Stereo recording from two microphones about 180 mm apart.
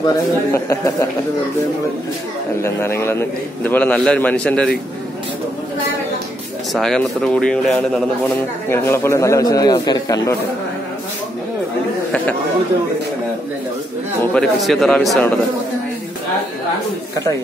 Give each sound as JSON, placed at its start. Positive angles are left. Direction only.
{"t": 0.0, "sound": "a man's voice", "side_deg": 15}
{"t": 2.6, "sound": "a man's voice", "side_deg": 15}
{"t": 6.7, "sound": "a man's voice", "side_deg": 0}
{"t": 14.3, "sound": "speech", "side_deg": 5}